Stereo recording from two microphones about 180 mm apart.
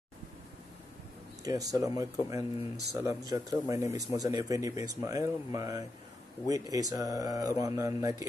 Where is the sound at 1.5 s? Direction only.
20° right (ahead or behind).